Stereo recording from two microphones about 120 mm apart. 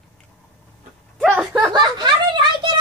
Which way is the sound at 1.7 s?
40° right (ahead or behind).